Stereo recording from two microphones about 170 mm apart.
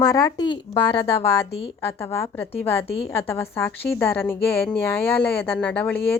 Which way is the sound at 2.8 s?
35° left (ahead or behind).